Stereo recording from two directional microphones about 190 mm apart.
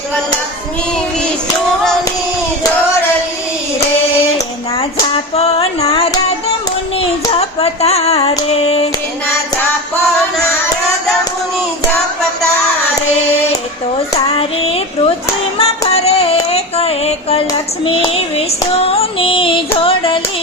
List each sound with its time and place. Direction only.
4.8 s a sound: 30° left (ahead or behind)
7.3 s a sound: 35° left (ahead or behind)
8.4 s female singing: 30° left (ahead or behind)
14.3 s female singing: 30° left (ahead or behind)
15.5 s music: 30° left (ahead or behind)
17.8 s female singing: 30° left (ahead or behind)
19.8 s music: 25° left (ahead or behind)